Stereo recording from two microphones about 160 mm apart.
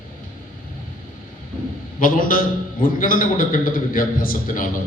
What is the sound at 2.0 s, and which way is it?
A man's voice, 60° left (ahead or behind).